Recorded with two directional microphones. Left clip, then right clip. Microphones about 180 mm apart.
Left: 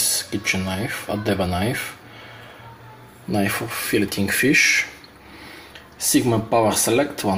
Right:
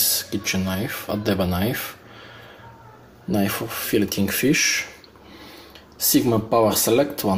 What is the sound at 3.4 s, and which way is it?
Speech, 15° right (ahead or behind).